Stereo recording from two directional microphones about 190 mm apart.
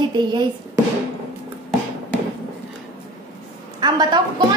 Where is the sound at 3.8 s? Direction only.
20° right (ahead or behind).